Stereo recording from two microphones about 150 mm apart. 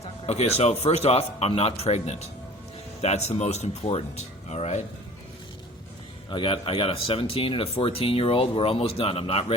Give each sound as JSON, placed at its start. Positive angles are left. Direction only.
{"t": 0.3, "sound": "speech", "side_deg": 45}
{"t": 6.3, "sound": "speech", "side_deg": 35}